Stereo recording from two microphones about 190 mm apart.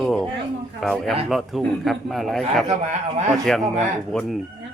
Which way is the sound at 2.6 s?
35° right (ahead or behind).